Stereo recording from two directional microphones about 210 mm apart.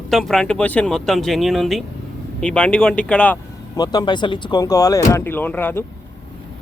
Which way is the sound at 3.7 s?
20° left (ahead or behind).